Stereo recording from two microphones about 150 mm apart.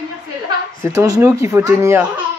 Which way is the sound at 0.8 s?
20° right (ahead or behind).